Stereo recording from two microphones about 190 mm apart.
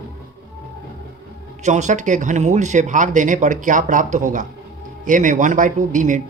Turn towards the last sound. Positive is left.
turn(degrees=-40)  # may be behind; listen again after turning